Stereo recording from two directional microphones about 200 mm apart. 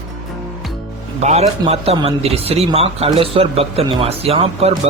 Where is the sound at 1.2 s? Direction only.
35° right (ahead or behind).